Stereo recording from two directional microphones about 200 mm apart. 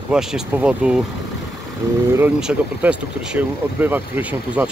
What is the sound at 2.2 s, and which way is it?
Speech, 5° right (ahead or behind).